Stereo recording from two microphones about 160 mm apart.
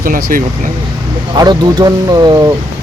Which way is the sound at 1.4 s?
25° right (ahead or behind).